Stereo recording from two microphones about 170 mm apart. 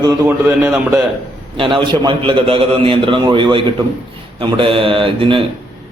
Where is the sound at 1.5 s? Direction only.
30° right (ahead or behind).